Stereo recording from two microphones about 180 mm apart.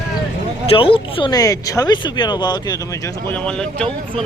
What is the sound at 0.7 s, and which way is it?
Speech, 30° left (ahead or behind).